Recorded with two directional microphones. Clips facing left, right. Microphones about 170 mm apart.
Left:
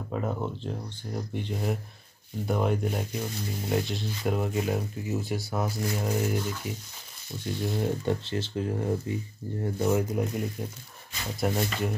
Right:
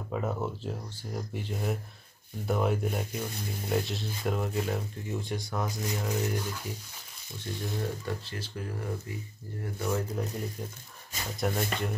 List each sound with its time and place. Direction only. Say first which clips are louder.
0.1 s speech: left 1 dB; 5° left (ahead or behind)
7.8 s speech: left 6 dB; 25° left (ahead or behind)
9.9 s speech: left 5 dB; 10° left (ahead or behind)